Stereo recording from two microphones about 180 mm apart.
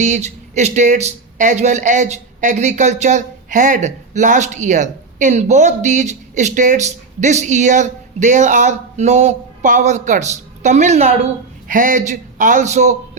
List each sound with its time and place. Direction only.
0.0 s a man's voice: 40° right (ahead or behind)